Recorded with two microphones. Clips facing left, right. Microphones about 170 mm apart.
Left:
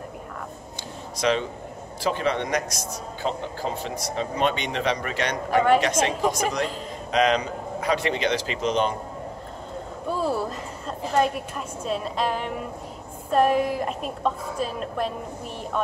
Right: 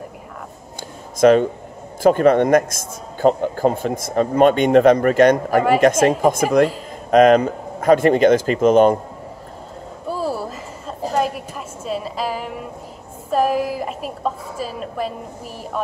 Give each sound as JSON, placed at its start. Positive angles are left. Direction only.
{"t": 1.2, "sound": "a man's voice", "side_deg": -50}
{"t": 10.0, "sound": "a sound", "side_deg": -5}
{"t": 11.1, "sound": "a woman's voice", "side_deg": 0}